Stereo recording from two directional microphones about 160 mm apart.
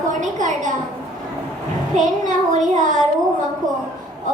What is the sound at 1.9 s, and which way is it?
Child singing, 50° right (ahead or behind).